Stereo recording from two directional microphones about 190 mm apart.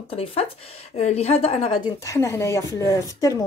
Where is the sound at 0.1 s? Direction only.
30° left (ahead or behind).